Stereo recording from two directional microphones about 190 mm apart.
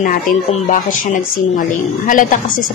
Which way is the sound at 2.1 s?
45° left (ahead or behind).